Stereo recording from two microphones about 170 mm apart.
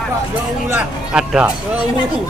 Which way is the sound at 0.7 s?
10° right (ahead or behind).